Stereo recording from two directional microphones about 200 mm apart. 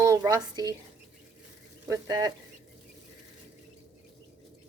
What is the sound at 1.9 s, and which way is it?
Speech, 20° right (ahead or behind).